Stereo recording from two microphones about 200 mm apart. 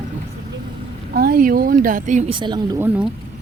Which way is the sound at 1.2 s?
45° right (ahead or behind).